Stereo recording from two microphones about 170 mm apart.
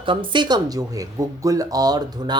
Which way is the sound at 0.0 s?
30° right (ahead or behind).